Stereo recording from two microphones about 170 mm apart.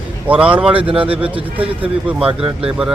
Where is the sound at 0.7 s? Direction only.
30° right (ahead or behind).